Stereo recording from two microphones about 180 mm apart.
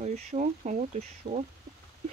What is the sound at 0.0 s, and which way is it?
Speech, 40° right (ahead or behind).